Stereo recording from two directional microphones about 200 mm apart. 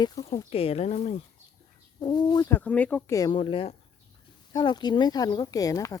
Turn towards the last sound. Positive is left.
turn(degrees=15)  # may be behind; listen again after turning